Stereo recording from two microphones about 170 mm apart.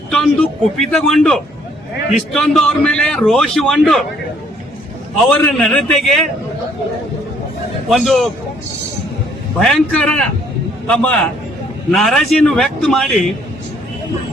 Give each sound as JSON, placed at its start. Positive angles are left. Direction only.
{"t": 0.1, "sound": "a man's voice", "side_deg": 0}
{"t": 5.2, "sound": "a man's voice", "side_deg": 0}
{"t": 7.9, "sound": "a man's voice", "side_deg": 0}
{"t": 9.6, "sound": "a man's voice", "side_deg": 0}